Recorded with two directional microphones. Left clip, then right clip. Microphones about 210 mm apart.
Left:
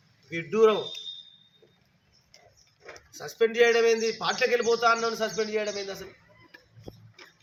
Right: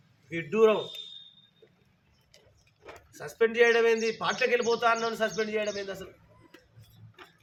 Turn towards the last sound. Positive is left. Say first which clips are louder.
# left 1 dB
turn(degrees=-5)  # may be behind; listen again after turning